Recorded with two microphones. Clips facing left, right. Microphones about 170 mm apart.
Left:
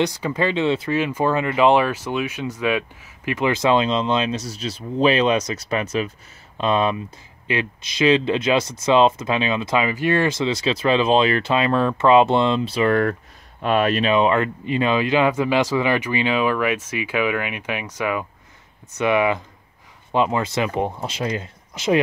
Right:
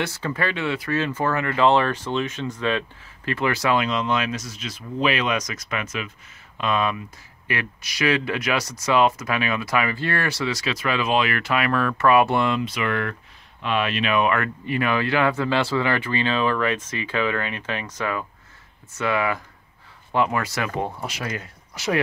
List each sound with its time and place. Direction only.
0.0 s speech: 15° left (ahead or behind); by 14.1 s 40° left (ahead or behind)
14.1 s speech: 25° left (ahead or behind)